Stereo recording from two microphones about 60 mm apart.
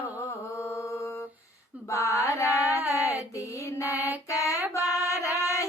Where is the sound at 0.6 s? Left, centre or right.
Left.